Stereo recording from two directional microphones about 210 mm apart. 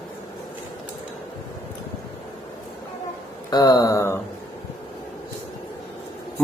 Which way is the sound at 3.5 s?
20° left (ahead or behind).